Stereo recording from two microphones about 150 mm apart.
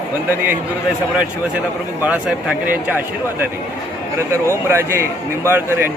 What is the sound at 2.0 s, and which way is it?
Speech, 10° right (ahead or behind).